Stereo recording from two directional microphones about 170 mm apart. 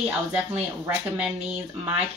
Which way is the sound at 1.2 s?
5° right (ahead or behind).